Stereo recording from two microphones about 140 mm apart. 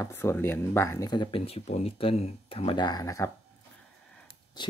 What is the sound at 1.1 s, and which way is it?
Speech, 35° left (ahead or behind).